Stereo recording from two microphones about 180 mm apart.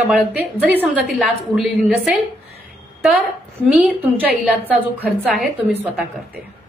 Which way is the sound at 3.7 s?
5° right (ahead or behind).